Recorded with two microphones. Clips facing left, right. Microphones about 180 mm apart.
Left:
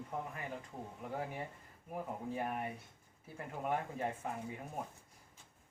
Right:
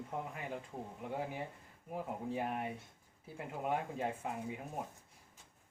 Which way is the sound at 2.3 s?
20° right (ahead or behind).